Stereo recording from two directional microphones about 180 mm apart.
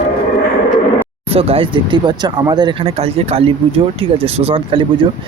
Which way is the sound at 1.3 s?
35° right (ahead or behind).